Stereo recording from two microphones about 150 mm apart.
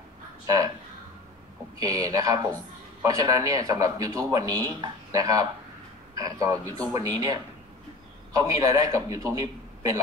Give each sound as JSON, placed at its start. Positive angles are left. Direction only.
{"t": 1.8, "sound": "a man's voice", "side_deg": -25}